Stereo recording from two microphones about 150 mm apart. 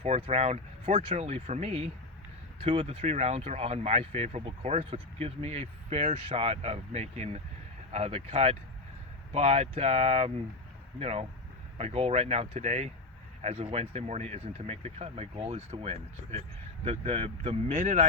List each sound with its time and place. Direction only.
0.2 s speech: 45° right (ahead or behind)